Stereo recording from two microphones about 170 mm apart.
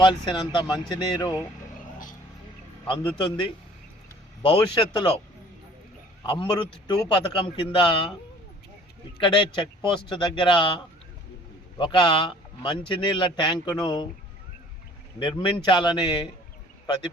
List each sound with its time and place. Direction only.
0.0 s speech: 25° left (ahead or behind)
2.8 s a man's voice: 30° left (ahead or behind)
6.2 s speech: 30° left (ahead or behind)
9.1 s speech: 30° left (ahead or behind)
15.2 s speech: 30° left (ahead or behind)